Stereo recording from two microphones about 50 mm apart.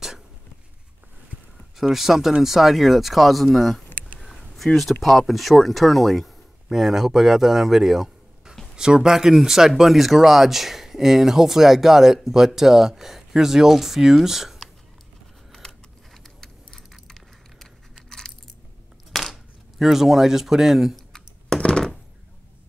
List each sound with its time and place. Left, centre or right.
1.8 s speech: centre
4.2 s a sound: centre
5.0 s speech: centre
16.3 s keys jangling: centre
19.1 s speech: centre
20.9 s typing: centre
21.5 s a sound: left